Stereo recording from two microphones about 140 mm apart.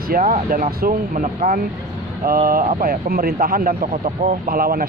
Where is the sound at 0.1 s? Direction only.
85° right.